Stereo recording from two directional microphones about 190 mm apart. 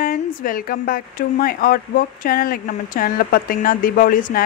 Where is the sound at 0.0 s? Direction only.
45° left (ahead or behind).